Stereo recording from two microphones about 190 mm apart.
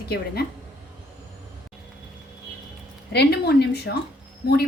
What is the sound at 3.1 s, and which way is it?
Speech, 60° left (ahead or behind).